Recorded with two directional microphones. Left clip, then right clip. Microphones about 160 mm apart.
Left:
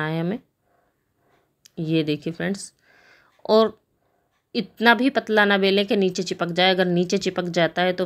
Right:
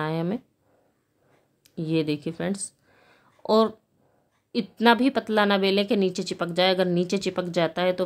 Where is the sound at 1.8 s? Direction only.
Centre (ahead or behind).